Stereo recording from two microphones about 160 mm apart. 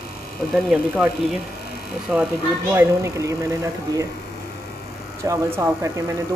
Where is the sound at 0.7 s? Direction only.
5° right (ahead or behind).